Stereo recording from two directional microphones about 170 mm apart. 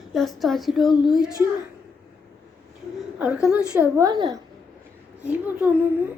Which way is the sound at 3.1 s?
5° right (ahead or behind).